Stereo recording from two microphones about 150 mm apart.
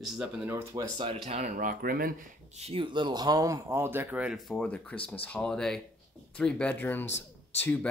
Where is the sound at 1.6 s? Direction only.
70° right (ahead or behind).